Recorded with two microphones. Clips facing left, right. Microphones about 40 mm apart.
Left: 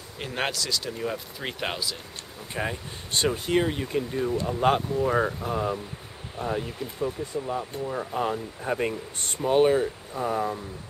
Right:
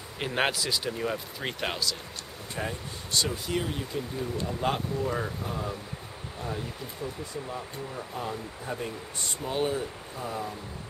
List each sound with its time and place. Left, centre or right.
0.2 s speech: centre
0.9 s speech: centre
2.5 s speech: left
4.5 s speech: left
7.9 s speech: left
9.4 s speech: left